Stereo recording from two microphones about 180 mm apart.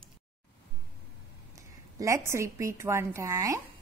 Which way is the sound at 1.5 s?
20° right (ahead or behind).